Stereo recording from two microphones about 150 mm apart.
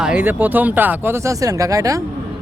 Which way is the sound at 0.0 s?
5° right (ahead or behind).